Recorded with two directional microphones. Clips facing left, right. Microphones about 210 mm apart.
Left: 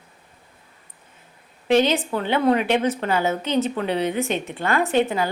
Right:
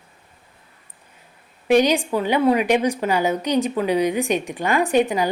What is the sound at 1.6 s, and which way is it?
Speech, 15° right (ahead or behind).